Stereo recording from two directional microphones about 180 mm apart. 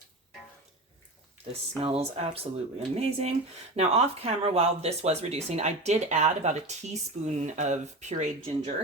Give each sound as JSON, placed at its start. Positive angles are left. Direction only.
{"t": 1.8, "sound": "speech", "side_deg": -35}